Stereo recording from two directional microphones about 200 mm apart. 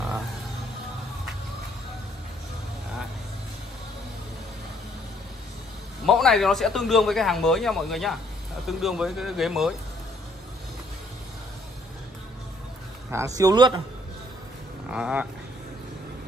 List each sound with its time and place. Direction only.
6.0 s a man's voice: centre (ahead or behind)
13.1 s speech: 15° right (ahead or behind)
14.9 s a man's voice: 5° right (ahead or behind)